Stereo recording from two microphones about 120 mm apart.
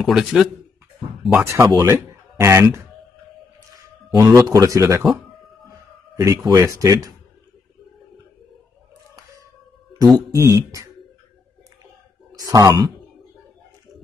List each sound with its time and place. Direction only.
0.0 s speech: centre (ahead or behind)
1.4 s speech: 25° right (ahead or behind)
4.1 s speech: 30° right (ahead or behind)
6.1 s speech: 25° right (ahead or behind)
9.9 s speech: 35° right (ahead or behind)
10.3 s speech: 25° right (ahead or behind)
12.4 s speech: 30° right (ahead or behind)